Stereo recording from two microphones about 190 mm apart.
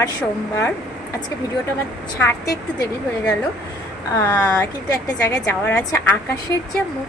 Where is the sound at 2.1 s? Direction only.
10° left (ahead or behind).